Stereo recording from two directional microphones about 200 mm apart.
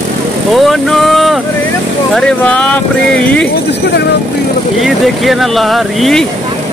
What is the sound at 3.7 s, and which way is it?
Speech, 55° left (ahead or behind).